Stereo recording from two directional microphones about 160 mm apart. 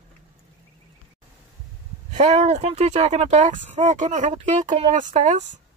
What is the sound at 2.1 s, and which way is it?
Speech, 45° right (ahead or behind).